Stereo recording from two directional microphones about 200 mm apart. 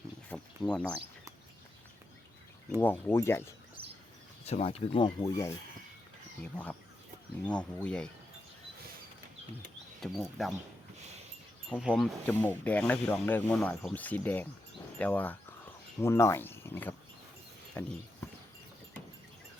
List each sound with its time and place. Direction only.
0.3 s speech: 5° left (ahead or behind)
2.8 s speech: 10° left (ahead or behind)
4.4 s speech: 30° left (ahead or behind); by 8.1 s 5° left (ahead or behind)
10.0 s speech: centre (ahead or behind)
11.8 s speech: centre (ahead or behind)